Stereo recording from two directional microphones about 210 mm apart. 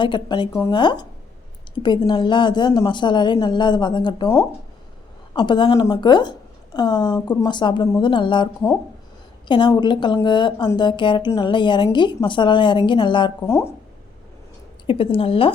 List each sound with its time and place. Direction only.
0.0 s a woman's voice: 20° left (ahead or behind)
14.8 s a woman's voice: 25° left (ahead or behind)